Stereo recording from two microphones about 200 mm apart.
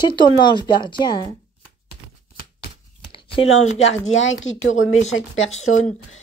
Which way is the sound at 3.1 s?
25° left (ahead or behind).